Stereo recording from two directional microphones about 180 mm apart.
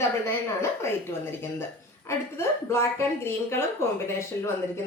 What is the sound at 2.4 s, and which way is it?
Speech, 15° left (ahead or behind).